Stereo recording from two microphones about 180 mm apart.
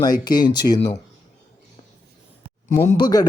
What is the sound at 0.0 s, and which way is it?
Speech, 20° left (ahead or behind).